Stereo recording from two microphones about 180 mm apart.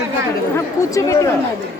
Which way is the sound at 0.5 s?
20° left (ahead or behind).